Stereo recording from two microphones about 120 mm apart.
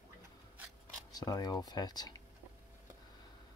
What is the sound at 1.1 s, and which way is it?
Speech, 30° left (ahead or behind).